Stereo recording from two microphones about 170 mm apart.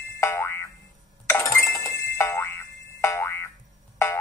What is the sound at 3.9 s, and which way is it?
Music, 15° left (ahead or behind).